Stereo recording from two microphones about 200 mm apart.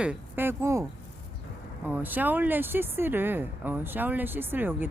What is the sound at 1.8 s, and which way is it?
Speech, 10° right (ahead or behind).